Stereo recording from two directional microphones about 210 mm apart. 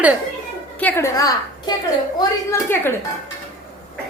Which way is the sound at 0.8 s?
15° left (ahead or behind).